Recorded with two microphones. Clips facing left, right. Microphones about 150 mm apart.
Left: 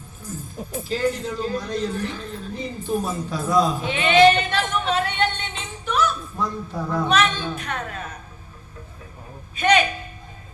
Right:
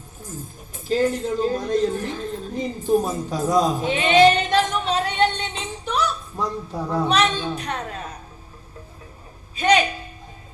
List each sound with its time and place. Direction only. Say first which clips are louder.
0.9 s speech: right 4 dB; 45° right (ahead or behind)
6.7 s a woman's voice: even; 10° right (ahead or behind)
7.1 s a woman's voice: even; 35° right (ahead or behind)
9.6 s a sound: even; 35° right (ahead or behind)